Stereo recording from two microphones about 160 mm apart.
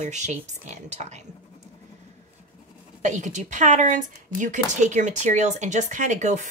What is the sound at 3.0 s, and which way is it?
Speech, 50° right (ahead or behind).